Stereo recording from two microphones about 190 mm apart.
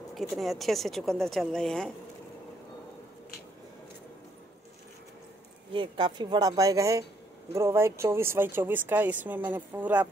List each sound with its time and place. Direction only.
0.1 s speech: centre (ahead or behind)
5.7 s speech: 25° right (ahead or behind); by 10.0 s 10° right (ahead or behind)